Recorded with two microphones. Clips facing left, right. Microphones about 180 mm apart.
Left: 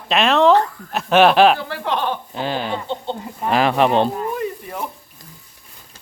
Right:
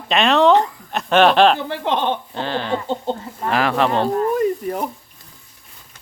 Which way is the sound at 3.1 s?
40° right (ahead or behind).